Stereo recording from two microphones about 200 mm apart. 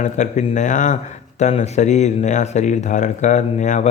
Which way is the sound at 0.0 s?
35° left (ahead or behind).